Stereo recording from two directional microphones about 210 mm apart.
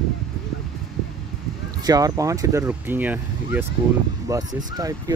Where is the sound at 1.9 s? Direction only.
15° right (ahead or behind).